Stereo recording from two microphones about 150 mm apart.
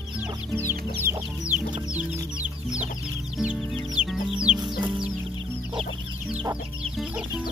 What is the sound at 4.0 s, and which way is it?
Chicken, 5° right (ahead or behind).